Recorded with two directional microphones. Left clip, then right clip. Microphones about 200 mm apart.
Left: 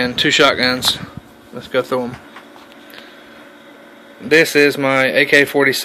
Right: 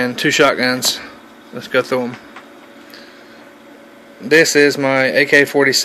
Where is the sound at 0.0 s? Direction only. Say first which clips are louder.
Left 1 dB; 5° right (ahead or behind).